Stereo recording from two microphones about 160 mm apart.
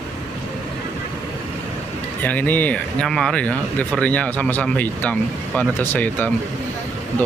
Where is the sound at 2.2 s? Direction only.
10° left (ahead or behind).